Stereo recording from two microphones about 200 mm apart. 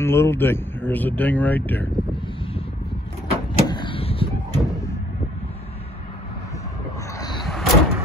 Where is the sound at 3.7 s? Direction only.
25° left (ahead or behind).